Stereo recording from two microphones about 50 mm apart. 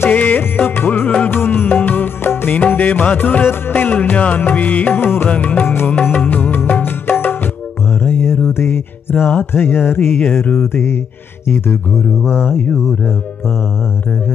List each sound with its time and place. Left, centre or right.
0.0 s music: left
1.4 s music: left
4.9 s mantra: left
5.3 s music: left
8.0 s mantra: left
8.5 s music: left
9.8 s mantra: left
10.2 s music: left
10.6 s mantra: left
12.2 s a sound: centre